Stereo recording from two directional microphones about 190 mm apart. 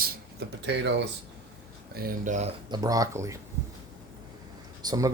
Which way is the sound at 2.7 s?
20° right (ahead or behind).